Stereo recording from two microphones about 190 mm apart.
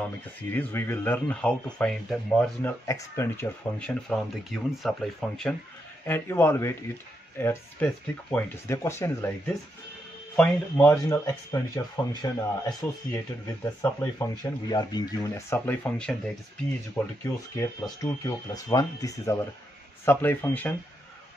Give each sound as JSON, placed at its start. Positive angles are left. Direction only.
{"t": 0.0, "sound": "speech", "side_deg": 10}
{"t": 2.9, "sound": "speech", "side_deg": 15}
{"t": 10.3, "sound": "speech", "side_deg": 10}